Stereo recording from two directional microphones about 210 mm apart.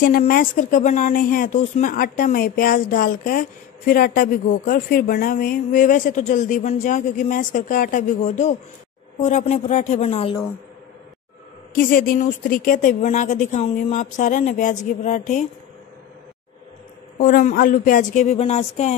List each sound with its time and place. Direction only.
0.0 s speech: 40° left (ahead or behind)
11.7 s speech: 45° left (ahead or behind)
17.2 s speech: 40° left (ahead or behind)